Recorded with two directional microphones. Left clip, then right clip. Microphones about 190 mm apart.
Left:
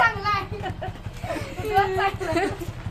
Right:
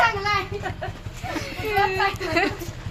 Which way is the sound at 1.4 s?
25° left (ahead or behind).